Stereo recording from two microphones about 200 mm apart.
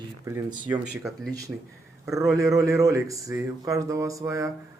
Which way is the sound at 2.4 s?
15° right (ahead or behind).